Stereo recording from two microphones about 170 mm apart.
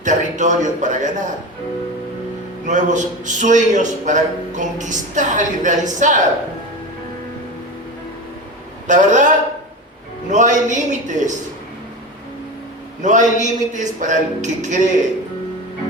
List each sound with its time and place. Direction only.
0.0 s a man's voice: 45° right (ahead or behind)
2.6 s a man's voice: 45° right (ahead or behind)
8.9 s a man's voice: 45° right (ahead or behind)
13.0 s a man's voice: 45° right (ahead or behind)